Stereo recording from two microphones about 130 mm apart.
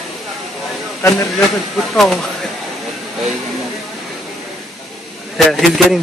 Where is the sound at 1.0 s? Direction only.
20° left (ahead or behind).